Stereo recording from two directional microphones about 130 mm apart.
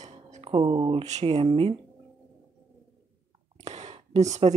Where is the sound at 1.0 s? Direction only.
55° right (ahead or behind).